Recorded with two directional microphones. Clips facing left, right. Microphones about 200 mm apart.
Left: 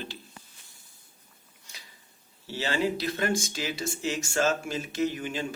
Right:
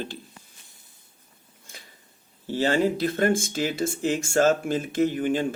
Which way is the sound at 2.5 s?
50° right (ahead or behind).